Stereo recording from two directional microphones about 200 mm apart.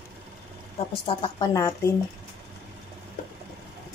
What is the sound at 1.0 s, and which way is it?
Speech, 20° left (ahead or behind).